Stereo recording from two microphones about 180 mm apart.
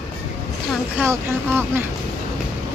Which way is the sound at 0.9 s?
15° right (ahead or behind).